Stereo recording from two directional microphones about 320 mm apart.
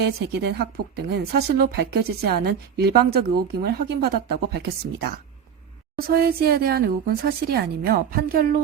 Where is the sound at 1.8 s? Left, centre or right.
Right.